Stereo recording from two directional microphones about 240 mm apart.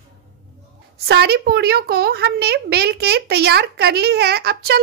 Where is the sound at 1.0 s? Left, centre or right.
Right.